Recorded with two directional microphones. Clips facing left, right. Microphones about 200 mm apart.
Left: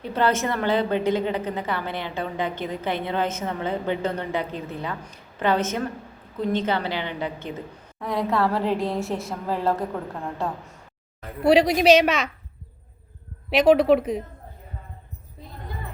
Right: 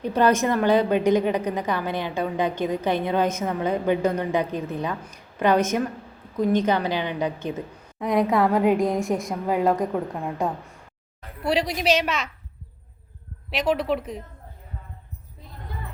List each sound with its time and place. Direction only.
0.0 s a woman's voice: 15° right (ahead or behind)
11.4 s a woman's voice: 70° left (ahead or behind)
13.7 s a woman's voice: 70° left (ahead or behind)